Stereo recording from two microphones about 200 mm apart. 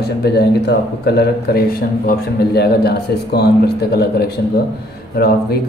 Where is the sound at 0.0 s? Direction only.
55° left (ahead or behind).